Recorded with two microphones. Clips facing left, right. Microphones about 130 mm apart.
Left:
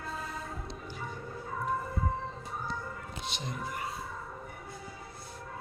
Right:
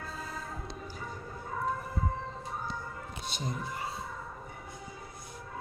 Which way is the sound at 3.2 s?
40° right (ahead or behind).